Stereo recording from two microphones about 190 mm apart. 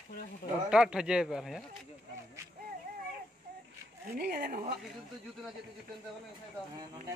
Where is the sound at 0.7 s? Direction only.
5° right (ahead or behind).